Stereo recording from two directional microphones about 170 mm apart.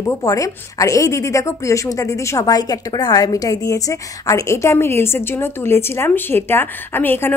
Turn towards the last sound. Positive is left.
turn(degrees=10)  # may be behind; listen again after turning